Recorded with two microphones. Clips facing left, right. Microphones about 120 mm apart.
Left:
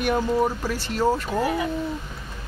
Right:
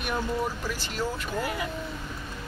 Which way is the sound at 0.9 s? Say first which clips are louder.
Left 10 dB; 25° left (ahead or behind).